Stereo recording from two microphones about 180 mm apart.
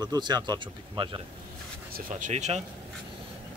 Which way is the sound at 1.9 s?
50° right (ahead or behind).